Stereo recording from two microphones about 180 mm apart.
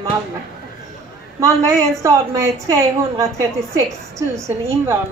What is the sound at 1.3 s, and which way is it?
A woman's voice, 15° right (ahead or behind).